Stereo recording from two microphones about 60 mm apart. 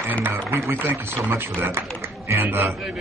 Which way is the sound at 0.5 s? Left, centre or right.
Right.